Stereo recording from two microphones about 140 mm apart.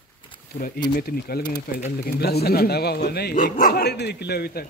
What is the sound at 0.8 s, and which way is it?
Speech, 90° left.